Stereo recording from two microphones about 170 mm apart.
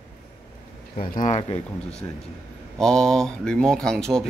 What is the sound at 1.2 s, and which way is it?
Speech, 40° left (ahead or behind).